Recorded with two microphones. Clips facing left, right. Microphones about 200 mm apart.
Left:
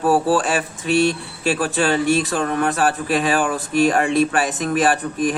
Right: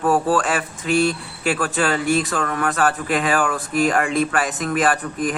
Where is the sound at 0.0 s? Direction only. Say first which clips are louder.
Left 1 dB; 30° left (ahead or behind).